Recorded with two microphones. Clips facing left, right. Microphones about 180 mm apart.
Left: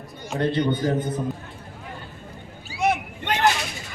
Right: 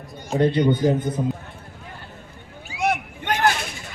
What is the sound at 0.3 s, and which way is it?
Speech, 15° right (ahead or behind).